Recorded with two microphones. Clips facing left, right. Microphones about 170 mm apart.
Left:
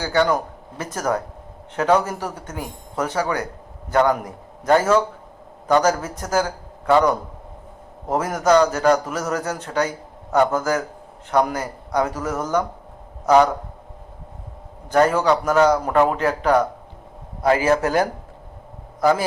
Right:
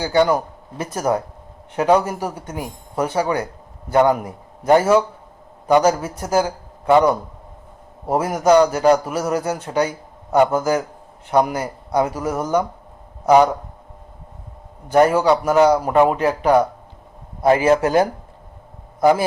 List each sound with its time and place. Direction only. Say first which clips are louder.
0.0 s a man's voice: right 3 dB; 10° right (ahead or behind)
3.2 s a man's voice: right 3 dB; 30° right (ahead or behind)
3.8 s a man's voice: right 3 dB; 10° right (ahead or behind)
14.8 s a man's voice: right 3 dB; 10° right (ahead or behind)
17.4 s a man's voice: right 3 dB; 25° right (ahead or behind)
18.9 s a man's voice: right 3 dB; 10° right (ahead or behind)